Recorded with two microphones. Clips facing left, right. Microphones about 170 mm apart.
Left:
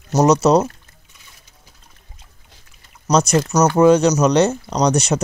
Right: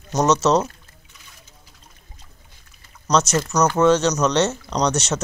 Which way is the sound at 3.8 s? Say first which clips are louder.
Left 5 dB; 10° left (ahead or behind).